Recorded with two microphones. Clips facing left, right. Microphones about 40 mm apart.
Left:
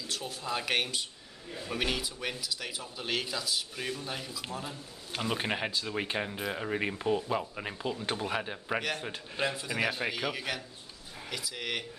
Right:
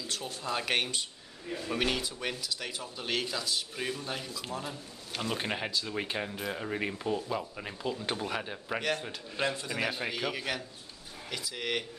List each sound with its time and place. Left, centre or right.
0.0 s speech: centre